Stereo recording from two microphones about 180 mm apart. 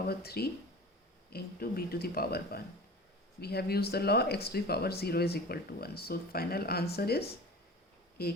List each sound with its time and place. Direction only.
0.1 s speech: 60° left (ahead or behind)